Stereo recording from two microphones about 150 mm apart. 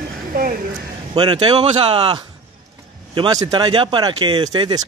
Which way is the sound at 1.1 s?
30° right (ahead or behind).